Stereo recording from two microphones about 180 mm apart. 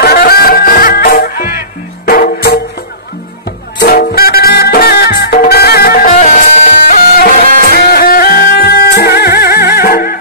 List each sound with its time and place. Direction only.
0.0 s music: 60° left (ahead or behind)
3.8 s music: 60° left (ahead or behind)
6.1 s music: 40° left (ahead or behind)